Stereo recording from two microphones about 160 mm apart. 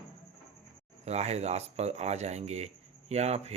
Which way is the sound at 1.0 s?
45° right (ahead or behind).